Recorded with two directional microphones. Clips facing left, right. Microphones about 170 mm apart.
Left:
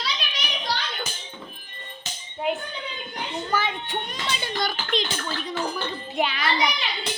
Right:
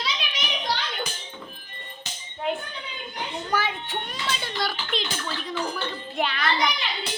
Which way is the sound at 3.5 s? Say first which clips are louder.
Even; 5° right (ahead or behind).